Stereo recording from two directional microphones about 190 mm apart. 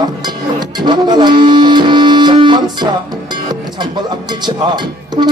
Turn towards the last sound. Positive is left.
turn(degrees=-25)  # may be behind; listen again after turning